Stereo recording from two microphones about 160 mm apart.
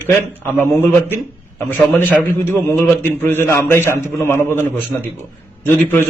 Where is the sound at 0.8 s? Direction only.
15° left (ahead or behind).